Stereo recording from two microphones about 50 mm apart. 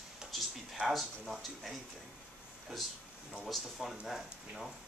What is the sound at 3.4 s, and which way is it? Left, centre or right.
Speech, centre.